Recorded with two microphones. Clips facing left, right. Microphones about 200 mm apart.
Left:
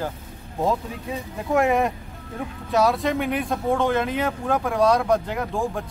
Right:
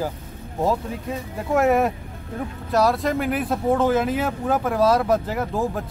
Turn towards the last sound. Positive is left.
turn(degrees=-5)  # may be behind; listen again after turning